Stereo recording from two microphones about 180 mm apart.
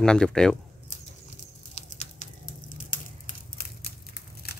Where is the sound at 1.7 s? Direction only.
35° left (ahead or behind).